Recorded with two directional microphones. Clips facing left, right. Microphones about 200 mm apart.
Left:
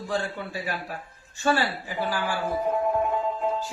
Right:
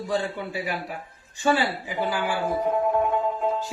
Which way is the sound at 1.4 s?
15° right (ahead or behind).